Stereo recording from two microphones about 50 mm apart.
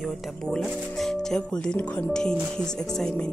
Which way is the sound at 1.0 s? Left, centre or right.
Centre.